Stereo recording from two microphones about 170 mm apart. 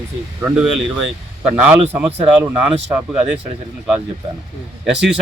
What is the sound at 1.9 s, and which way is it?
Speech, 10° right (ahead or behind).